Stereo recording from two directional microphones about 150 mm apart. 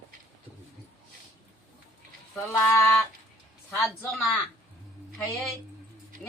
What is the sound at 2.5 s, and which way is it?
Speech, 15° left (ahead or behind).